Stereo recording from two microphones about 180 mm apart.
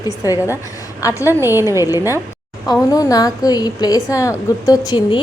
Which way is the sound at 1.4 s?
15° right (ahead or behind).